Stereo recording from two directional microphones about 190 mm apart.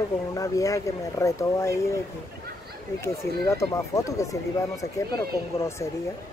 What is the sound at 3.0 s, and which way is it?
Speech, 15° left (ahead or behind).